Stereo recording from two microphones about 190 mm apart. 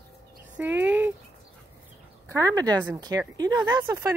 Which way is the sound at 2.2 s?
15° right (ahead or behind).